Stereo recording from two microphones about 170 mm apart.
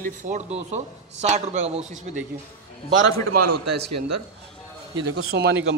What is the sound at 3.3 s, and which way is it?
Speech, 60° right (ahead or behind).